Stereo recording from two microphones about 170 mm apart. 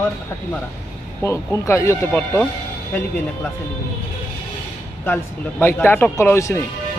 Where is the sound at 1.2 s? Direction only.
15° left (ahead or behind).